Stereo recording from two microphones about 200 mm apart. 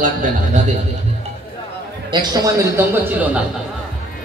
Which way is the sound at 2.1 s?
20° right (ahead or behind).